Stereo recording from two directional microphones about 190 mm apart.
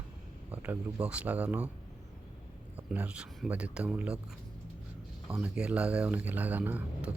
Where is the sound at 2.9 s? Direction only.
5° right (ahead or behind).